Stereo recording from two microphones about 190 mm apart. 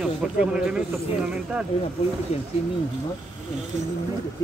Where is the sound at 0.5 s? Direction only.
5° right (ahead or behind).